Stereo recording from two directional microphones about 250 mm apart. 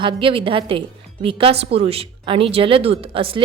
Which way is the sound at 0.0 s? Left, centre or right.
Right.